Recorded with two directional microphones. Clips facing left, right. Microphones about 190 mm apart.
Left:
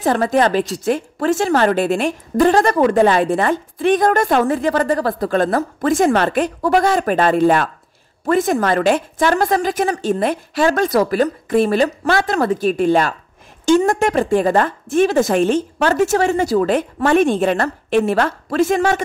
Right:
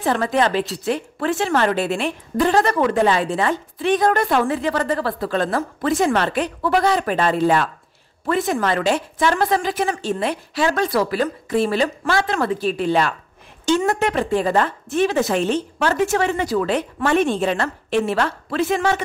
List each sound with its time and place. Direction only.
0.0 s a woman's voice: 40° left (ahead or behind)